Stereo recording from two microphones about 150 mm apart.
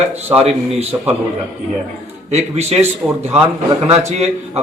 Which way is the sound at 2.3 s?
45° right (ahead or behind).